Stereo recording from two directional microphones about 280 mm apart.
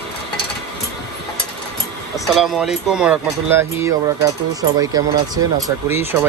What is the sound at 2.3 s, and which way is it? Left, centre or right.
Speech, centre.